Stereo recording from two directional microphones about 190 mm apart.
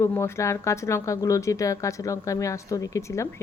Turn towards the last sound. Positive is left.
turn(degrees=15)  # may be behind; listen again after turning